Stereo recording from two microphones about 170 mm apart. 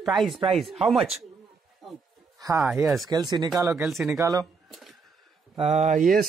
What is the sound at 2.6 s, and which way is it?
Speech, 10° right (ahead or behind).